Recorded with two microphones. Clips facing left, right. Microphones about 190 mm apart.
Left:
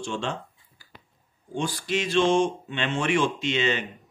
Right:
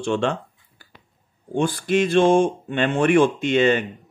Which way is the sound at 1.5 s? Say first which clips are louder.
Right 8 dB; 55° right (ahead or behind).